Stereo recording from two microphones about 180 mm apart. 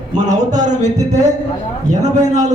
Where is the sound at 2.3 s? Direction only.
40° right (ahead or behind).